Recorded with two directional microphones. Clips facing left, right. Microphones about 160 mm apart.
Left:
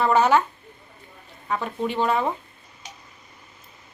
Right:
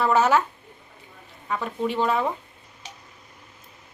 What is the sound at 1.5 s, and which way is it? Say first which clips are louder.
Speech: even; centre (ahead or behind).